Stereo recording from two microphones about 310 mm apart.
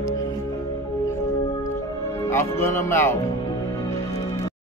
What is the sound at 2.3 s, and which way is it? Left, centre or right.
Speech, centre.